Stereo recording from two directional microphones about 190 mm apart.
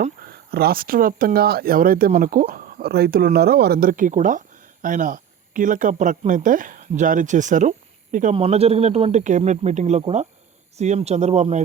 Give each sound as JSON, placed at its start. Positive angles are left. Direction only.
{"t": 0.0, "sound": "speech", "side_deg": -55}